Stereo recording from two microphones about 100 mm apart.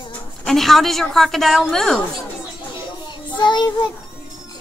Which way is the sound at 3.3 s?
50° left (ahead or behind).